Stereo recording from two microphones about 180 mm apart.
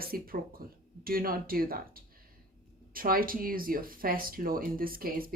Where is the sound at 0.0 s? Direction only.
55° right (ahead or behind).